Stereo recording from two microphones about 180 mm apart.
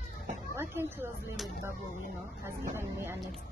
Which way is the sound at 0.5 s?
15° right (ahead or behind).